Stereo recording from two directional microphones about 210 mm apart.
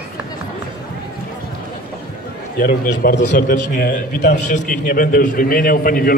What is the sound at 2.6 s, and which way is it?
A man's voice, 45° left (ahead or behind).